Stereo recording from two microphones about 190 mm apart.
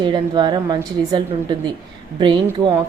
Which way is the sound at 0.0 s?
25° right (ahead or behind).